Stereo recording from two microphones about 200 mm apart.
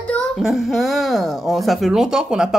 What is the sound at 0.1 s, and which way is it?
Speech, centre (ahead or behind).